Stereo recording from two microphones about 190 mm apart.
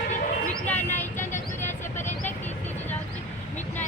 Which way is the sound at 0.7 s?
10° left (ahead or behind).